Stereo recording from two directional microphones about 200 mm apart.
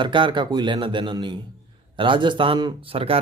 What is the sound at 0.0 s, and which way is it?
Speech, 25° right (ahead or behind).